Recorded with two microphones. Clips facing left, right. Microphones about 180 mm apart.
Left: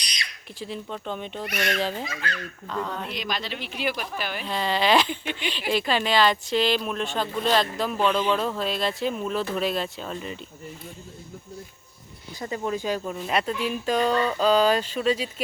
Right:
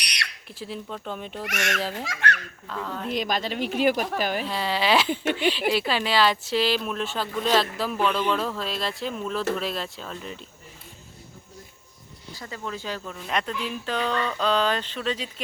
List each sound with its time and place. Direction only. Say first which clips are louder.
0.0 s a sound: right 2 dB; 70° right (ahead or behind)
0.6 s speech: left 1 dB; centre (ahead or behind)
1.5 s speech: left 2 dB; 75° right (ahead or behind)
2.6 s speech: left 1 dB; centre (ahead or behind)
3.1 s a woman's voice: right 5 dB; 45° right (ahead or behind)
4.4 s speech: left 1 dB; 5° right (ahead or behind)
5.3 s speech: right 8 dB; 45° right (ahead or behind)
5.5 s speech: even; 5° right (ahead or behind)
12.3 s speech: left 6 dB; 20° left (ahead or behind)